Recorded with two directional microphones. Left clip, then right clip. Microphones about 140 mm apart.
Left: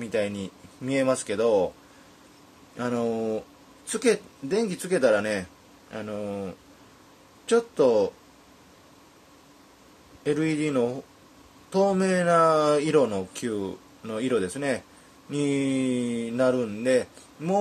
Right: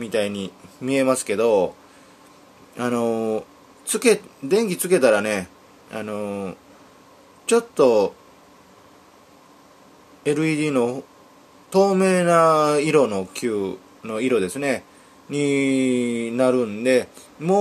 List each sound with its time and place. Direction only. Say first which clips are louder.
0.0 s speech: right 4 dB; 15° right (ahead or behind)
2.8 s speech: right 5 dB; 20° right (ahead or behind)
10.2 s speech: right 4 dB; 15° right (ahead or behind)